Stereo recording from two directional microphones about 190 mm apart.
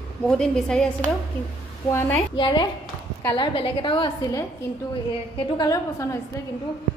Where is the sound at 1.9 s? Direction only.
10° left (ahead or behind).